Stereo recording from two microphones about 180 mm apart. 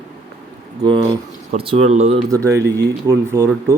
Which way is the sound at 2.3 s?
15° right (ahead or behind).